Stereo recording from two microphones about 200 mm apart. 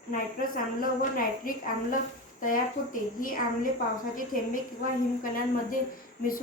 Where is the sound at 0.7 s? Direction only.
45° left (ahead or behind).